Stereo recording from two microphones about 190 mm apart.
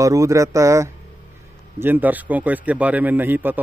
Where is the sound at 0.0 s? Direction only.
15° right (ahead or behind).